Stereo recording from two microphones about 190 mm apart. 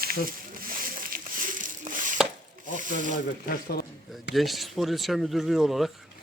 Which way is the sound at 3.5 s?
55° left (ahead or behind).